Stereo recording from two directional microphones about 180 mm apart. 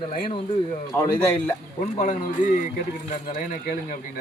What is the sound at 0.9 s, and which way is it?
Speech, 10° left (ahead or behind).